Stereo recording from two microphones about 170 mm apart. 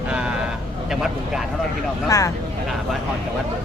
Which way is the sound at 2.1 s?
20° left (ahead or behind).